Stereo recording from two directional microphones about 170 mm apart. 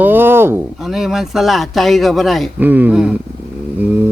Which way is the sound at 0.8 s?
Centre (ahead or behind).